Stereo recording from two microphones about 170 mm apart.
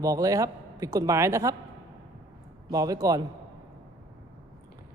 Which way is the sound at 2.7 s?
20° right (ahead or behind).